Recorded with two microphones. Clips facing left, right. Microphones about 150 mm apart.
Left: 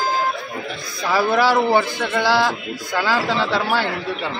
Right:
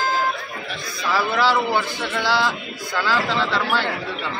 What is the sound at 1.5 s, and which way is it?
Speech, 45° left (ahead or behind).